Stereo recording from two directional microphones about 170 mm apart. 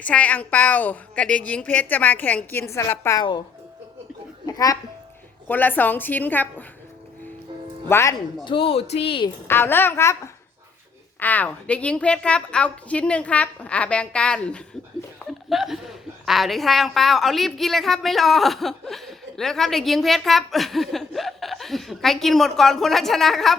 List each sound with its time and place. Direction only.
0.0 s a woman's voice: 10° left (ahead or behind)
3.2 s a woman's voice: 25° left (ahead or behind)
4.4 s speech: 20° left (ahead or behind)
5.5 s a woman's voice: 10° left (ahead or behind)
7.9 s a woman's voice: 15° left (ahead or behind)
8.4 s speech: 30° left (ahead or behind)
9.5 s a woman's voice: 15° left (ahead or behind)
11.2 s a woman's voice: 10° left (ahead or behind)